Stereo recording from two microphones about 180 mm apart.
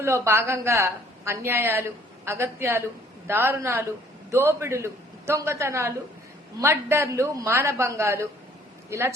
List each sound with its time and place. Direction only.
0.0 s a woman's voice: 15° right (ahead or behind)